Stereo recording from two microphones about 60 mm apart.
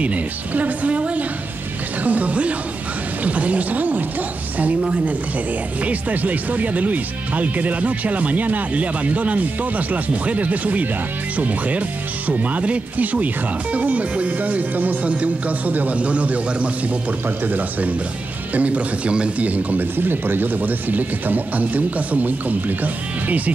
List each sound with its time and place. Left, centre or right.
0.0 s speech: right